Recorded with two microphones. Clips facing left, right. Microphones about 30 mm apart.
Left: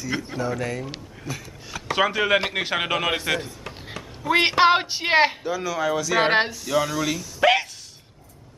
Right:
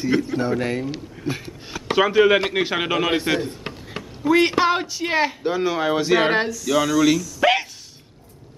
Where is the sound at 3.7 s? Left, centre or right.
Right.